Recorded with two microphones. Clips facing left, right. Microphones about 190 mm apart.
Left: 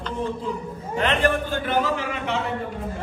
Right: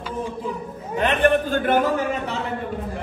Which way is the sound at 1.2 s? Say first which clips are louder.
Right 4 dB; 55° right (ahead or behind).